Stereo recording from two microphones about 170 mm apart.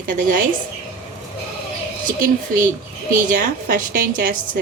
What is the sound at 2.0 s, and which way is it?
A woman's voice, 50° right (ahead or behind).